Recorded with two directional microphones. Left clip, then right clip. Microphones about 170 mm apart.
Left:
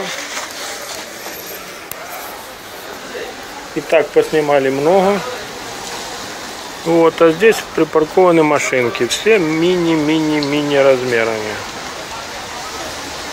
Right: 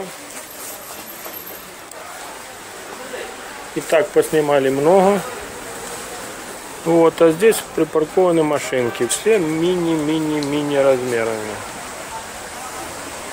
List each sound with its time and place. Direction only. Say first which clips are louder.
3.9 s speech: left 3 dB; 25° right (ahead or behind)
6.9 s speech: left 2 dB; 20° right (ahead or behind)